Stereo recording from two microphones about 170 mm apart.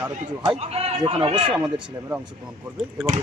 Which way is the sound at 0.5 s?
35° right (ahead or behind).